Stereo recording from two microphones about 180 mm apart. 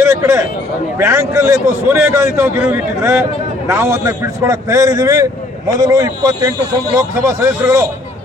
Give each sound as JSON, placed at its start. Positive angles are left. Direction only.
{"t": 0.0, "sound": "a man's voice", "side_deg": -15}